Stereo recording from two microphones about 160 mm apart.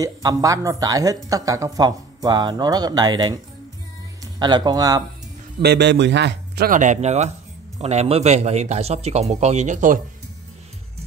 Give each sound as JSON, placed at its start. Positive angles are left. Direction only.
{"t": 0.0, "sound": "speech", "side_deg": -25}
{"t": 5.6, "sound": "a man's voice", "side_deg": -90}
{"t": 6.7, "sound": "speech", "side_deg": -50}